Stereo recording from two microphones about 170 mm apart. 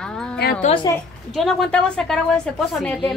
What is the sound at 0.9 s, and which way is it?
Speech, 20° left (ahead or behind).